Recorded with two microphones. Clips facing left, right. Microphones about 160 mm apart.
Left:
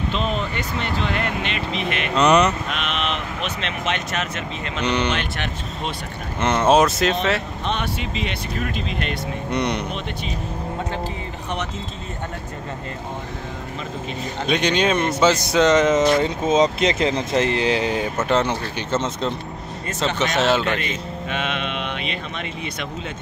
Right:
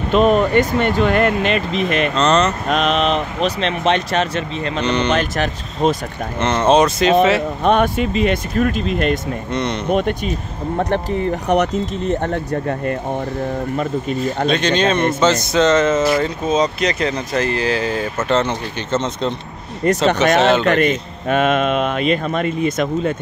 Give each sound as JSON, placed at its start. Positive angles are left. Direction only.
{"t": 0.1, "sound": "speech", "side_deg": -55}
{"t": 2.1, "sound": "speech", "side_deg": 10}
{"t": 2.7, "sound": "speech", "side_deg": -40}
{"t": 4.8, "sound": "speech", "side_deg": 10}
{"t": 5.1, "sound": "speech", "side_deg": -40}
{"t": 6.4, "sound": "speech", "side_deg": 5}
{"t": 7.6, "sound": "speech", "side_deg": -50}
{"t": 9.5, "sound": "speech", "side_deg": 15}
{"t": 9.8, "sound": "speech", "side_deg": -50}
{"t": 11.4, "sound": "speech", "side_deg": -70}
{"t": 14.5, "sound": "speech", "side_deg": 10}
{"t": 20.1, "sound": "speech", "side_deg": -65}
{"t": 20.6, "sound": "speech", "side_deg": -55}